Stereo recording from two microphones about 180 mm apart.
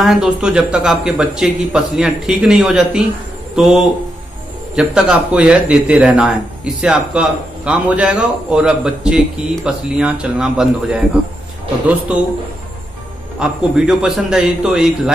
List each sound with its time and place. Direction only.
0.0 s a man's voice: centre (ahead or behind)
12.1 s a man's voice: 5° right (ahead or behind)
13.4 s a man's voice: 5° right (ahead or behind)